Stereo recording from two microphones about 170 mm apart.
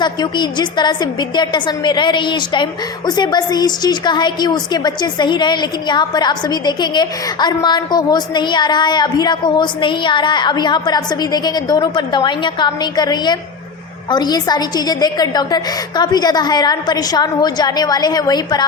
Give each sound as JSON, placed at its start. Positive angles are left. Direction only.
{"t": 0.0, "sound": "a woman's voice", "side_deg": 25}